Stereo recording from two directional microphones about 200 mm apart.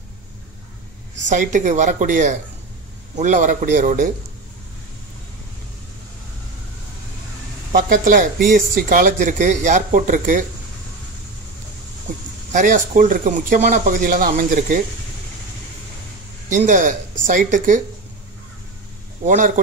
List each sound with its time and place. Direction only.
1.2 s speech: 40° right (ahead or behind)
7.7 s speech: 40° right (ahead or behind)
12.5 s speech: 40° right (ahead or behind)
16.4 s speech: 40° right (ahead or behind)
19.2 s speech: 40° right (ahead or behind)